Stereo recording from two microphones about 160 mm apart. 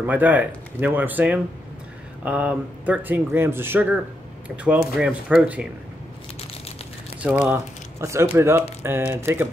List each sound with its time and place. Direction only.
0.0 s speech: 10° right (ahead or behind)
7.4 s speech: 15° right (ahead or behind)